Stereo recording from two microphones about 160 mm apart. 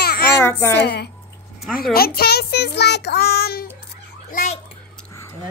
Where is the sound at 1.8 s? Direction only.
70° left (ahead or behind).